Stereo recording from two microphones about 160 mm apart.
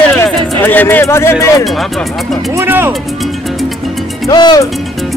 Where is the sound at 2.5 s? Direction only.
15° right (ahead or behind).